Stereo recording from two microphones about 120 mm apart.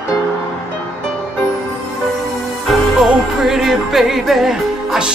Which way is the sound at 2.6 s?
Centre (ahead or behind).